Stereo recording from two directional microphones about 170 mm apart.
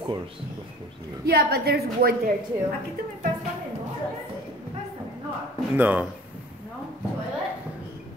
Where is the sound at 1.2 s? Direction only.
65° right (ahead or behind).